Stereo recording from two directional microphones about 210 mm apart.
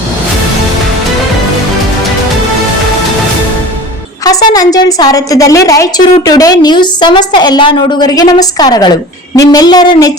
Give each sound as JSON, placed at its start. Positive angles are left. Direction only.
{"t": 4.4, "sound": "a woman's voice", "side_deg": 15}